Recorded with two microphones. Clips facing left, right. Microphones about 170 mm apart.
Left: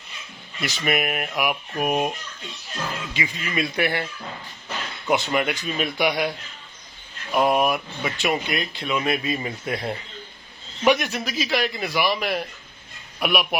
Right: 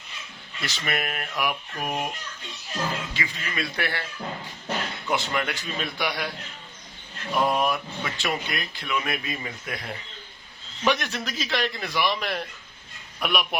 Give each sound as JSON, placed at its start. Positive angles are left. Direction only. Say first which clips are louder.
{"t": 0.6, "sound": "a man's voice", "louder": "left 6 dB", "side_deg": 15}
{"t": 3.2, "sound": "a man's voice", "louder": "left 5 dB", "side_deg": 15}
{"t": 5.0, "sound": "a man's voice", "louder": "left 6 dB", "side_deg": 20}
{"t": 7.3, "sound": "speech", "louder": "left 4 dB", "side_deg": 15}
{"t": 10.8, "sound": "a man's voice", "louder": "left 5 dB", "side_deg": 10}